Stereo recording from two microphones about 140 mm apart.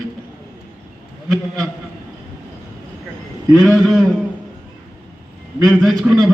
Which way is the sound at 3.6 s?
Centre (ahead or behind).